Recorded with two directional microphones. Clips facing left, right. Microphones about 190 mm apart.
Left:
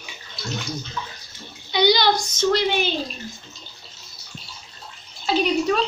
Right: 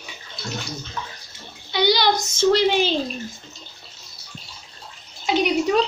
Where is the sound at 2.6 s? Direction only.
90° right.